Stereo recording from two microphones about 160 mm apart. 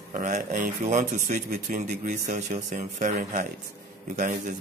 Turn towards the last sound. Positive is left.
turn(degrees=-50)  # may be behind; listen again after turning